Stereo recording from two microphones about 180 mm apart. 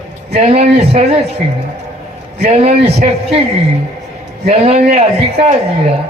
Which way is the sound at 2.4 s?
35° right (ahead or behind).